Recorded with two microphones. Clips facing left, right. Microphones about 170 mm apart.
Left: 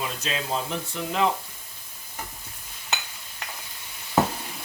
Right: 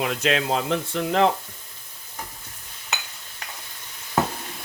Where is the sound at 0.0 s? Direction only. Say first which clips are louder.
Right 7 dB; 75° right (ahead or behind).